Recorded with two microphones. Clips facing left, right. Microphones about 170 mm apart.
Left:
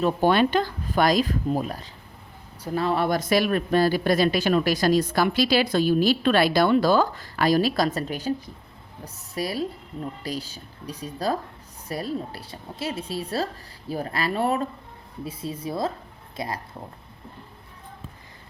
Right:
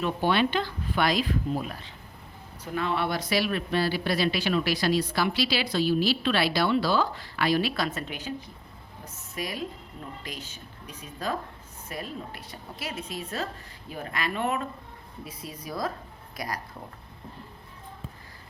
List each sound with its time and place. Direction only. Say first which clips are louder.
0.0 s a woman's voice: left 5 dB; 45° left (ahead or behind); by 16.5 s 25° left (ahead or behind)